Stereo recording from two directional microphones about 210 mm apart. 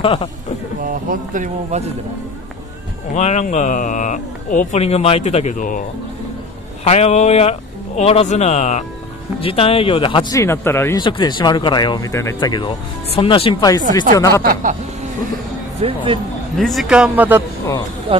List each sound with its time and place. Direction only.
0.0 s speech: 20° left (ahead or behind)
0.8 s speech: 40° right (ahead or behind)
3.2 s speech: 35° left (ahead or behind)
10.4 s speech: 10° left (ahead or behind)
11.0 s speech: 20° left (ahead or behind)
14.4 s speech: 40° right (ahead or behind)
15.8 s speech: 25° right (ahead or behind)
16.5 s a man's voice: centre (ahead or behind)
18.1 s speech: 25° right (ahead or behind)